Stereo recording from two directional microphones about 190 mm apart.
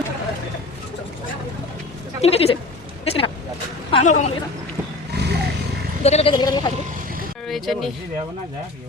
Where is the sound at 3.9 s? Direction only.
35° left (ahead or behind).